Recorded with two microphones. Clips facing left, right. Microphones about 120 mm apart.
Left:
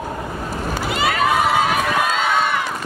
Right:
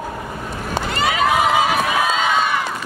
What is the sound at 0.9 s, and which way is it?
Crowd, centre (ahead or behind).